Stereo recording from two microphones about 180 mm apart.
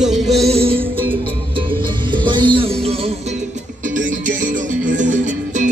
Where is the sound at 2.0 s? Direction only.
25° right (ahead or behind).